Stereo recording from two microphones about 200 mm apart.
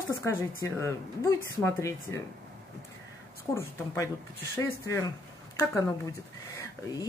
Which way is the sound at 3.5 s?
10° left (ahead or behind).